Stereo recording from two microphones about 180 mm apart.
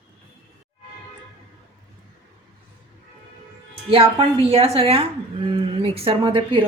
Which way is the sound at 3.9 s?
30° right (ahead or behind).